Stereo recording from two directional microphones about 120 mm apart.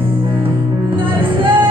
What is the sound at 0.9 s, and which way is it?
Music, 45° right (ahead or behind).